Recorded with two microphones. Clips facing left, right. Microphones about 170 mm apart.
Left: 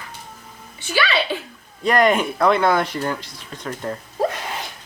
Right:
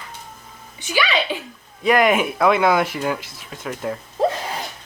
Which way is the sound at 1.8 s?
5° right (ahead or behind).